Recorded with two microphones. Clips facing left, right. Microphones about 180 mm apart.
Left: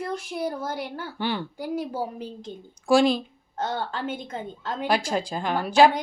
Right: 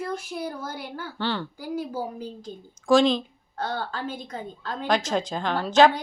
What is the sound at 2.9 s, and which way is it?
Speech, 10° left (ahead or behind).